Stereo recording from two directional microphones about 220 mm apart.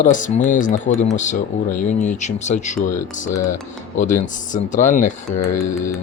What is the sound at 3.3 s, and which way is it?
Speech, 15° left (ahead or behind).